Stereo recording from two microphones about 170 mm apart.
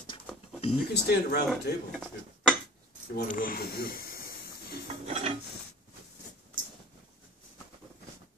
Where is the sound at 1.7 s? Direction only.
70° left (ahead or behind).